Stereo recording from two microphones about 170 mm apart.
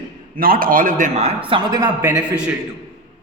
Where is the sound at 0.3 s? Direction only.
60° right (ahead or behind).